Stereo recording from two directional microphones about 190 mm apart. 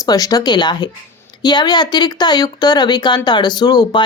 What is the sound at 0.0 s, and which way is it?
Speech, 20° left (ahead or behind).